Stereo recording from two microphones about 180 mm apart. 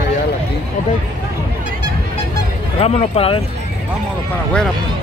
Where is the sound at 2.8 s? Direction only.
35° left (ahead or behind).